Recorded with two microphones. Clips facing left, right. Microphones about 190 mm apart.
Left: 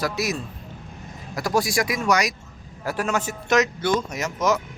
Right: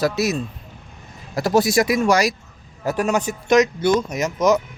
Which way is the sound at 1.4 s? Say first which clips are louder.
Right 6 dB; 25° right (ahead or behind).